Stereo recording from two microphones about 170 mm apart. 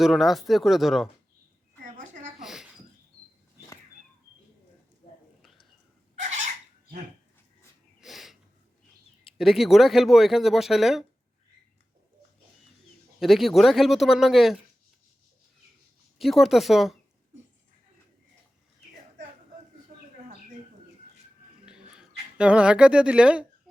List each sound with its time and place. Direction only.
0.0 s speech: centre (ahead or behind)
2.4 s a sound: 5° right (ahead or behind)
6.1 s bird: 45° right (ahead or behind)
8.0 s snort: centre (ahead or behind)
9.4 s speech: centre (ahead or behind)
13.1 s speech: centre (ahead or behind)
16.1 s speech: centre (ahead or behind)
21.7 s a sound: 5° right (ahead or behind)